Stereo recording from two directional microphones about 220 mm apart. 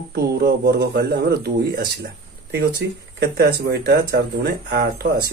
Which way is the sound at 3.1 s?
45° right (ahead or behind).